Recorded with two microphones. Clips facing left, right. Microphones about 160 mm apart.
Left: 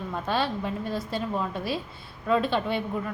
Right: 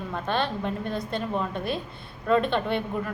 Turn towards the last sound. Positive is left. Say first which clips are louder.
# right 1 dB
turn(degrees=5)  # may be behind; listen again after turning